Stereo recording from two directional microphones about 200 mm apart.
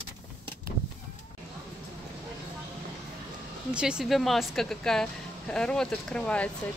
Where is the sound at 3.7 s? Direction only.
5° right (ahead or behind).